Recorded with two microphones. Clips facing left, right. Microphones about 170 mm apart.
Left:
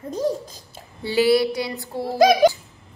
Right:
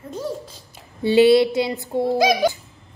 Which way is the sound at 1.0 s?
20° right (ahead or behind).